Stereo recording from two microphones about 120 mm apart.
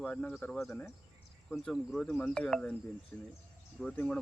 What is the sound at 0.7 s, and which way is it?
Speech, 20° left (ahead or behind).